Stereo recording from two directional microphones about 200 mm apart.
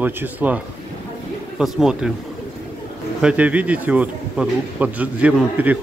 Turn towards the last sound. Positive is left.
turn(degrees=-5)  # may be behind; listen again after turning